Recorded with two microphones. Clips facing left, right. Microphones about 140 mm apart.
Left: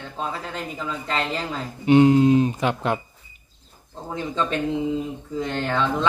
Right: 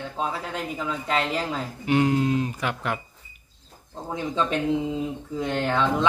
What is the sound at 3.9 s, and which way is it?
Speech, 15° right (ahead or behind).